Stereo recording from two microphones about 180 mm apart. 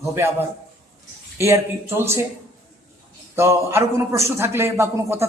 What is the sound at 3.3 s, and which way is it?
A man's voice, 15° right (ahead or behind).